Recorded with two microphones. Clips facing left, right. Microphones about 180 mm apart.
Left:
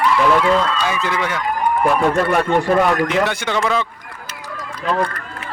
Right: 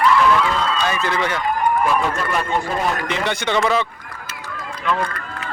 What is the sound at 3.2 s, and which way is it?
Speech, 5° left (ahead or behind).